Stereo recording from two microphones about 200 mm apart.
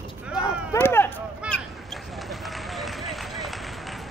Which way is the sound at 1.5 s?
Centre (ahead or behind).